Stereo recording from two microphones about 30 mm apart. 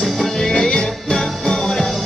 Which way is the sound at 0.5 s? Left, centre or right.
Centre.